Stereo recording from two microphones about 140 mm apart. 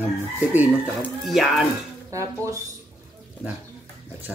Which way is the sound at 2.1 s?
20° right (ahead or behind).